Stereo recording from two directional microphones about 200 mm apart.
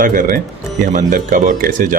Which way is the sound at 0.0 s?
45° right (ahead or behind).